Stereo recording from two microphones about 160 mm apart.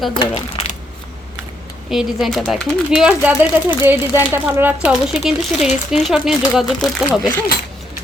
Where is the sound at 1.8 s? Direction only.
Centre (ahead or behind).